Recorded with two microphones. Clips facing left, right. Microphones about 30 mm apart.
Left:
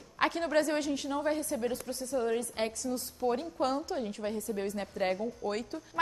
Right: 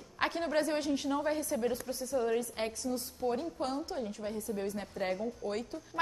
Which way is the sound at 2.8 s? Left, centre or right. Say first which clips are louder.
Left 1 dB; left.